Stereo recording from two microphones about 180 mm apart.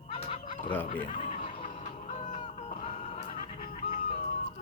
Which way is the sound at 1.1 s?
35° left (ahead or behind).